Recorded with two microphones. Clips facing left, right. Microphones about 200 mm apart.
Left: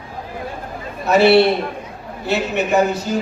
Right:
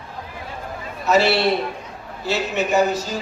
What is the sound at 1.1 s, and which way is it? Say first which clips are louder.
A man's voice: left 5 dB; 60° left (ahead or behind).